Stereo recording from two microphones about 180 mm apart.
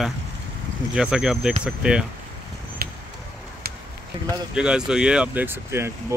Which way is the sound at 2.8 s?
55° right (ahead or behind).